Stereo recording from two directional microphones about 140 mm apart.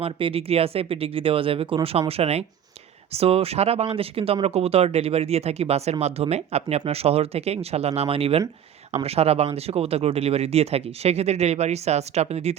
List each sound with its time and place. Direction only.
0.0 s speech: 40° right (ahead or behind)